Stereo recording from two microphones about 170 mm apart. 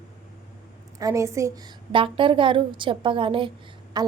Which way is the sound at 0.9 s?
20° right (ahead or behind).